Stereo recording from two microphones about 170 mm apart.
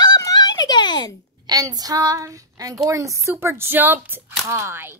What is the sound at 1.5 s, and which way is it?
Speech, 20° right (ahead or behind).